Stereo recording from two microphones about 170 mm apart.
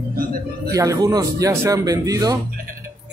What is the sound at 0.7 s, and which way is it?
Speech, 20° right (ahead or behind).